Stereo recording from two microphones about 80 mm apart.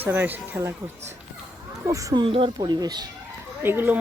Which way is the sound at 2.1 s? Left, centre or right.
Right.